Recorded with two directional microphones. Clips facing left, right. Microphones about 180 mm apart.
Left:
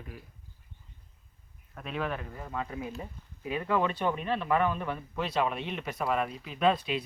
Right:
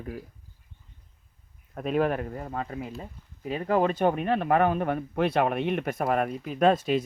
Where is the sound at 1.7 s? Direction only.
45° right (ahead or behind).